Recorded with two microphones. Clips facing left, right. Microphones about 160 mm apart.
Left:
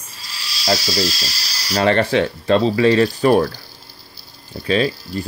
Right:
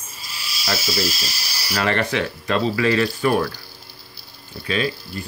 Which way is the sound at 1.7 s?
30° left (ahead or behind).